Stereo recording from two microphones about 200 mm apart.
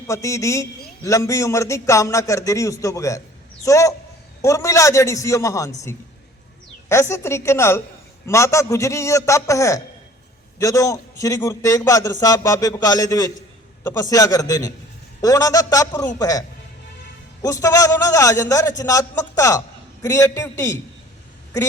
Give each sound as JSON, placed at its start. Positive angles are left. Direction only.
{"t": 0.1, "sound": "a man's voice", "side_deg": 15}
{"t": 6.8, "sound": "a man's voice", "side_deg": 15}
{"t": 17.4, "sound": "a man's voice", "side_deg": 15}